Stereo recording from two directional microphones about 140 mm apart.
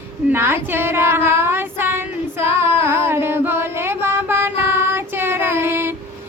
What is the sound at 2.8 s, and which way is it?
Mantra, 15° right (ahead or behind).